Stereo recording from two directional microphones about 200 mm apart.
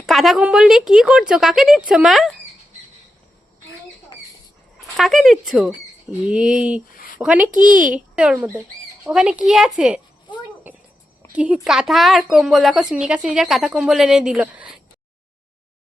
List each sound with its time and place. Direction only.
0.0 s speech: centre (ahead or behind)
4.9 s speech: centre (ahead or behind)
7.5 s speech: 40° right (ahead or behind)
7.9 s speech: 5° right (ahead or behind)
10.3 s a sound: 10° right (ahead or behind)
11.3 s speech: 5° right (ahead or behind)